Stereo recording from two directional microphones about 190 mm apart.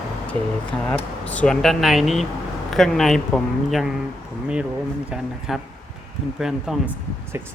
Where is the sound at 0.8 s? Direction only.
5° left (ahead or behind).